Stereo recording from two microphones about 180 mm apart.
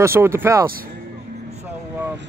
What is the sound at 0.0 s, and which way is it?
Speech, 15° right (ahead or behind).